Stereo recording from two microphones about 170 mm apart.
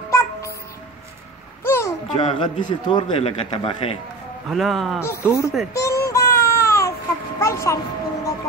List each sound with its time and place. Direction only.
0.1 s music: 15° left (ahead or behind)
1.6 s a sound: 15° left (ahead or behind)
2.1 s a man's voice: 35° left (ahead or behind)
4.5 s a man's voice: centre (ahead or behind)
5.0 s speech: 15° left (ahead or behind)
5.7 s child singing: 15° left (ahead or behind)
7.3 s music: 15° left (ahead or behind)